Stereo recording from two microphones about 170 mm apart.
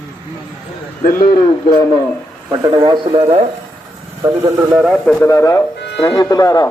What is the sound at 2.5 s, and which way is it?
Speech, 25° right (ahead or behind).